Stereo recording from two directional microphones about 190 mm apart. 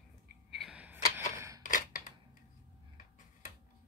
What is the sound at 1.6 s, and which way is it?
Scissors, 45° left (ahead or behind).